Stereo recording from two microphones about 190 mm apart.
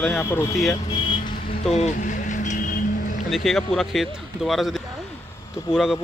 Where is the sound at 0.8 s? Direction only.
25° left (ahead or behind).